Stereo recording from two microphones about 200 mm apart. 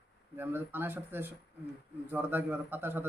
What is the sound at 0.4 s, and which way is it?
A man's voice, 10° right (ahead or behind).